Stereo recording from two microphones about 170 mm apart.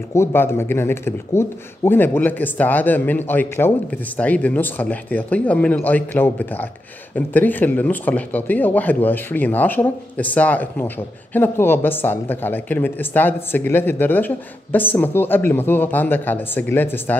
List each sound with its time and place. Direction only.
0.1 s speech: 15° left (ahead or behind)